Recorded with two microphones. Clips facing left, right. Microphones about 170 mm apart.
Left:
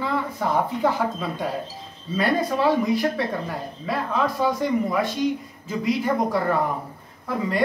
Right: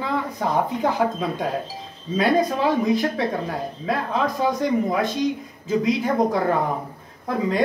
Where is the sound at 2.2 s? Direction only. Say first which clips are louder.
Right 2 dB; 15° right (ahead or behind).